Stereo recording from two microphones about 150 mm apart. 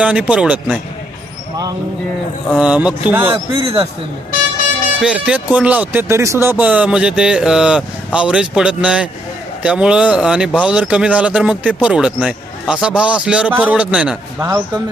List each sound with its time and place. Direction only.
0.0 s speech: 10° right (ahead or behind)
2.6 s speech: 10° right (ahead or behind)
3.5 s speech: 35° right (ahead or behind)
5.0 s speech: 5° right (ahead or behind)